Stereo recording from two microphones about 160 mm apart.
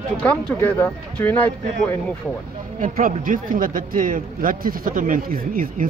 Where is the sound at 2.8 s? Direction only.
60° right (ahead or behind).